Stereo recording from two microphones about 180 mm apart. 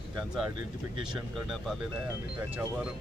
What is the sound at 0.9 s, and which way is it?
Speech, 25° right (ahead or behind).